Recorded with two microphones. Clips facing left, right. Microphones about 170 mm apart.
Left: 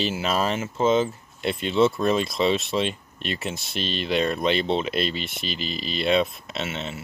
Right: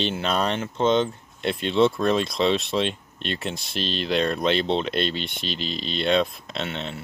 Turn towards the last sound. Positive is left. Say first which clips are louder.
# even
turn(degrees=0)  # may be behind; listen again after turning